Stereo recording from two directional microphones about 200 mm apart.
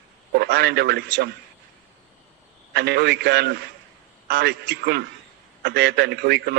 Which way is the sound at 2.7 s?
55° right (ahead or behind).